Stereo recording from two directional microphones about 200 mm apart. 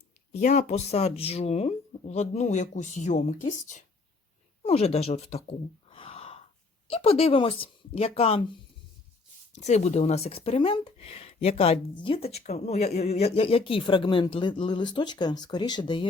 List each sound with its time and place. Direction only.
0.3 s speech: 35° left (ahead or behind)
5.9 s gasp: 30° left (ahead or behind)
6.9 s speech: 30° left (ahead or behind)
9.5 s speech: 35° left (ahead or behind)